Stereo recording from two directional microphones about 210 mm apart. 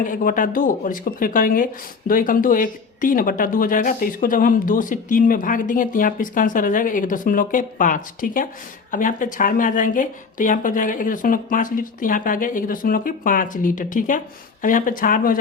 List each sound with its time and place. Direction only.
0.0 s speech: 40° left (ahead or behind)